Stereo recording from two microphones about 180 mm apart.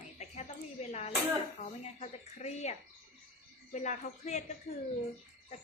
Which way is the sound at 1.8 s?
35° left (ahead or behind).